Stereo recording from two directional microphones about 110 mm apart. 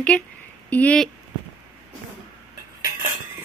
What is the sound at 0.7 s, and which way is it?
Speech, 15° left (ahead or behind).